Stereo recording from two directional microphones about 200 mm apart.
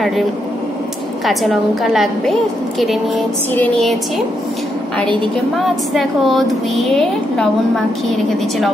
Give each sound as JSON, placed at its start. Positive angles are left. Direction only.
{"t": 1.2, "sound": "a woman's voice", "side_deg": 0}
{"t": 3.5, "sound": "a woman's voice", "side_deg": 5}
{"t": 5.6, "sound": "a woman's voice", "side_deg": 0}